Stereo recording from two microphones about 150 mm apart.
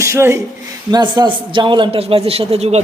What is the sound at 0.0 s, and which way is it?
Speech, 15° right (ahead or behind).